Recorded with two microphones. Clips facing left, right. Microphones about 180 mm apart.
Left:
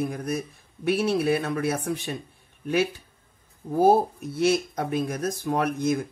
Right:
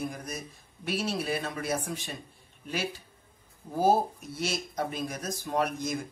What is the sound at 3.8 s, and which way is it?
Speech, 55° left (ahead or behind).